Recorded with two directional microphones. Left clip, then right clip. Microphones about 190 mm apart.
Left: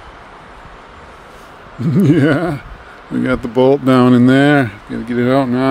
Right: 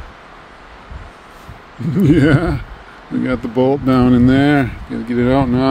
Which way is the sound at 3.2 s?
25° left (ahead or behind).